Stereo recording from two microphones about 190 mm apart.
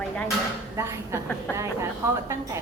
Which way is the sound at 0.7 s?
15° right (ahead or behind).